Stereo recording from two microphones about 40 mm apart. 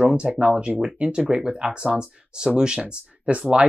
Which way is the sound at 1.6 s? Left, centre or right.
Right.